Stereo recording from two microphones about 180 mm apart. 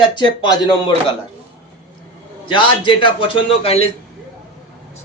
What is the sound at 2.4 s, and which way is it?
Speech, 30° left (ahead or behind).